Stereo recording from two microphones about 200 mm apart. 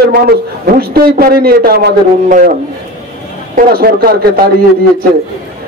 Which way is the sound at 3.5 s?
50° right (ahead or behind).